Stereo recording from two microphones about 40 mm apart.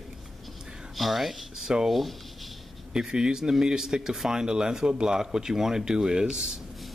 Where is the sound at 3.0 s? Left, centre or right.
Centre.